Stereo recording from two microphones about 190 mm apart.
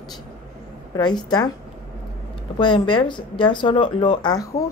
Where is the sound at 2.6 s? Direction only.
25° left (ahead or behind).